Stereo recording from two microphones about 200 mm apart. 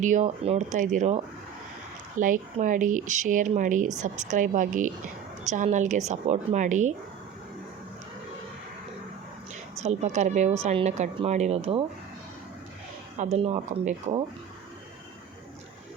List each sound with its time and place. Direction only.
0.0 s speech: 35° right (ahead or behind)
9.7 s speech: 35° right (ahead or behind)
13.3 s speech: 35° right (ahead or behind)